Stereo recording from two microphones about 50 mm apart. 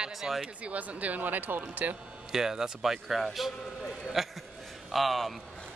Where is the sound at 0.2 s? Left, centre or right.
Centre.